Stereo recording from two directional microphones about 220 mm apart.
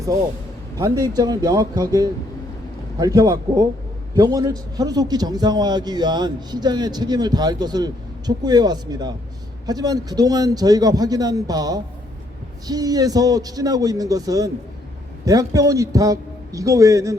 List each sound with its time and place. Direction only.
0.8 s a man's voice: 15° right (ahead or behind)